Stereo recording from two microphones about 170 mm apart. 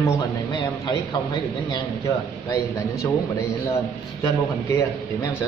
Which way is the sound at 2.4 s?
20° left (ahead or behind).